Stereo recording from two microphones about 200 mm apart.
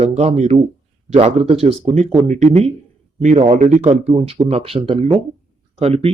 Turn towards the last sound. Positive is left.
turn(degrees=-30)  # may be behind; listen again after turning